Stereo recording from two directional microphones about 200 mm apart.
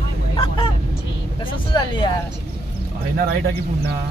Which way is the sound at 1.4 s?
25° left (ahead or behind).